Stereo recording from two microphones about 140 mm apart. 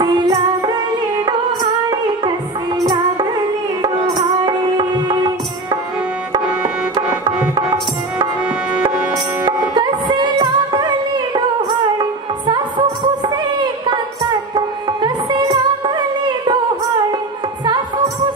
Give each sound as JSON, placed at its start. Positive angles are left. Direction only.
{"t": 0.0, "sound": "music", "side_deg": -25}
{"t": 3.8, "sound": "music", "side_deg": -30}
{"t": 9.8, "sound": "music", "side_deg": -30}